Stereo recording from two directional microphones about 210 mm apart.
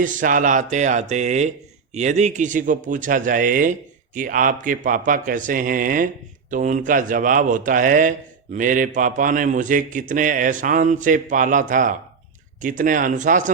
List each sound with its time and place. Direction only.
0.0 s a man's voice: 40° right (ahead or behind)